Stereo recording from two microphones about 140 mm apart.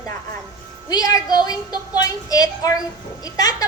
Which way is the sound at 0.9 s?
30° left (ahead or behind).